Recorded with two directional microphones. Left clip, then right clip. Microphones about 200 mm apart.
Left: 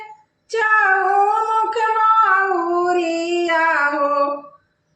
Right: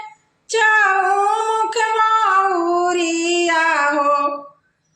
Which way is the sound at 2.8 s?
35° right (ahead or behind).